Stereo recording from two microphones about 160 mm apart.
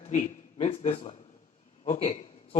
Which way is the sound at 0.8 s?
45° left (ahead or behind).